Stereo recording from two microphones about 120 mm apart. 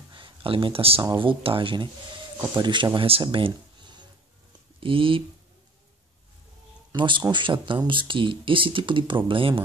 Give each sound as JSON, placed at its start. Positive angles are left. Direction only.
{"t": 0.1, "sound": "a sound", "side_deg": -45}
{"t": 1.1, "sound": "speech", "side_deg": -45}
{"t": 7.0, "sound": "speech", "side_deg": -40}